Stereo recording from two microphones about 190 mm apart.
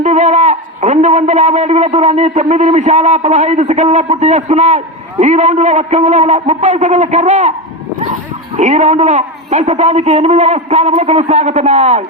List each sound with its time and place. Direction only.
0.0 s a man's voice: 40° right (ahead or behind)
8.5 s a man's voice: 40° right (ahead or behind)